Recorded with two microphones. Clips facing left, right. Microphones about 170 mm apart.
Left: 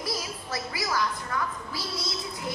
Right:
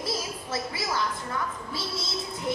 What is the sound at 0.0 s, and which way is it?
Music, 25° right (ahead or behind).